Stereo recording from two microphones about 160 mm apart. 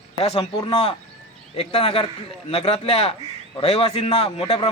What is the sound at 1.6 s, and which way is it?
A man's voice, 35° left (ahead or behind).